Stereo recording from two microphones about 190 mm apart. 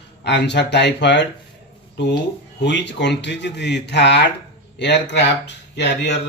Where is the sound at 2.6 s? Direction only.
65° left (ahead or behind).